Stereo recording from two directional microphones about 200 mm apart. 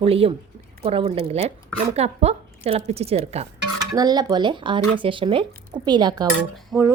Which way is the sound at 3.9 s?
20° right (ahead or behind).